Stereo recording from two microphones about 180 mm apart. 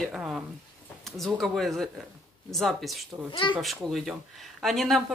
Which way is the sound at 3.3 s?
30° left (ahead or behind).